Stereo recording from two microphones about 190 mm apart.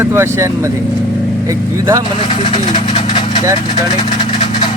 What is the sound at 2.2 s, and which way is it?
Speech, 25° left (ahead or behind).